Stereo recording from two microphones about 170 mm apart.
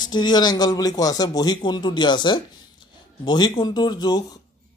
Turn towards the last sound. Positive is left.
turn(degrees=25)  # may be behind; listen again after turning